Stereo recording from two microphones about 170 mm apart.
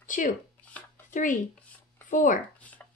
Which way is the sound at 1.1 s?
50° left (ahead or behind).